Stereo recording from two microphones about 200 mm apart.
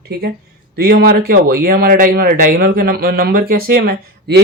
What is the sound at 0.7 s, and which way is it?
Speech, 55° right (ahead or behind).